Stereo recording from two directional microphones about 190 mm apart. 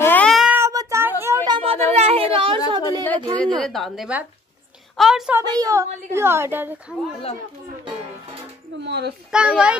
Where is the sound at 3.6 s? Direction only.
Centre (ahead or behind).